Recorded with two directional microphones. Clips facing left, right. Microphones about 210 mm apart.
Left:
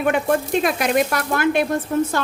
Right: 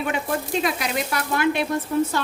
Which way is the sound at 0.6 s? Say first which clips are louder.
Left 6 dB; 50° left (ahead or behind).